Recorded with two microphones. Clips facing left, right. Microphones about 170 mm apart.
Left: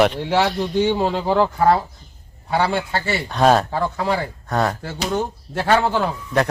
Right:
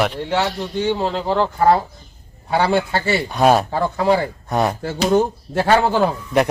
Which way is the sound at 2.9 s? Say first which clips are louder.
Right 3 dB; 5° right (ahead or behind).